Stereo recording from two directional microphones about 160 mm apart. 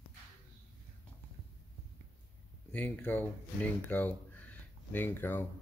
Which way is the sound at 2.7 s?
10° left (ahead or behind).